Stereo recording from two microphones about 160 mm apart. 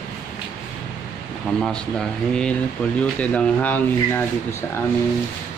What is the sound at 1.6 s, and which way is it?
Speech, 5° left (ahead or behind).